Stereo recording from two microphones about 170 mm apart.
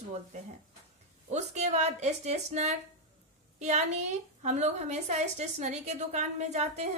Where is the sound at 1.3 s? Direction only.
45° right (ahead or behind).